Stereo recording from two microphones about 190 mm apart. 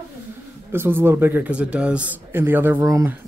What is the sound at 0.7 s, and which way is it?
A man's voice, 10° right (ahead or behind).